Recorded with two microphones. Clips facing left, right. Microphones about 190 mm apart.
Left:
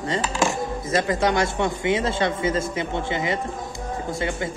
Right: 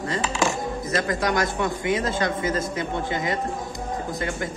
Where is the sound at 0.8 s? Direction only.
25° left (ahead or behind).